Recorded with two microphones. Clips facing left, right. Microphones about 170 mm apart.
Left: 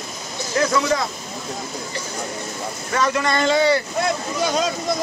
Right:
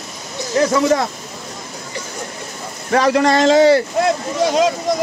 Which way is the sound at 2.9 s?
65° right (ahead or behind).